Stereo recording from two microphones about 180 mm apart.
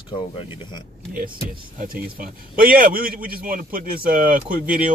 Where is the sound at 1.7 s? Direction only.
55° right (ahead or behind).